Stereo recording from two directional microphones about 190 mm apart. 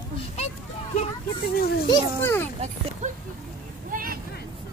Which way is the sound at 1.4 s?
55° left (ahead or behind).